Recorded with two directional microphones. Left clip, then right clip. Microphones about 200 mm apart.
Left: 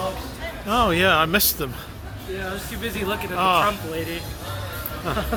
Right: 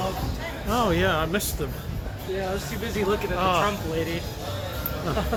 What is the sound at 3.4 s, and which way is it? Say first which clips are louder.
Speech: left 6 dB; 25° left (ahead or behind).